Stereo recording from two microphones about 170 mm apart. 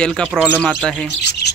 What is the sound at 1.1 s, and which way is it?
Speech, 80° left.